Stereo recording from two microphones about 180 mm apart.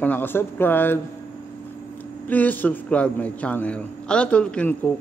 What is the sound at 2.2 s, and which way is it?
A man's voice, 10° left (ahead or behind).